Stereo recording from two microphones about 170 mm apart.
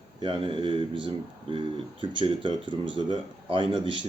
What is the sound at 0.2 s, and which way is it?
Speech, 30° right (ahead or behind).